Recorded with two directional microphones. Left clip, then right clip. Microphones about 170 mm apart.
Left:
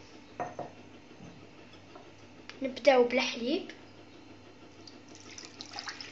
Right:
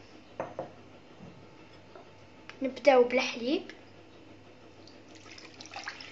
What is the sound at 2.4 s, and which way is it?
A woman's voice, 10° right (ahead or behind).